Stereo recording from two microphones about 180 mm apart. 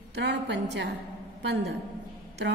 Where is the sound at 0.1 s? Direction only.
70° right (ahead or behind).